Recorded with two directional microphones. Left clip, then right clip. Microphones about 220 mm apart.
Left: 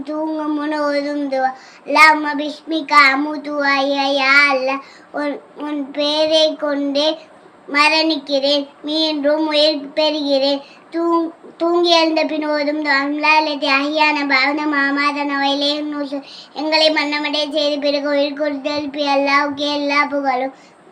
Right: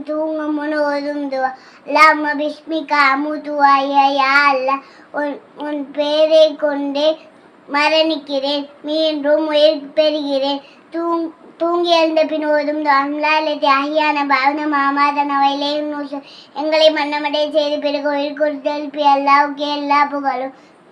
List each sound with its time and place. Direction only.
0.0 s child singing: 15° right (ahead or behind)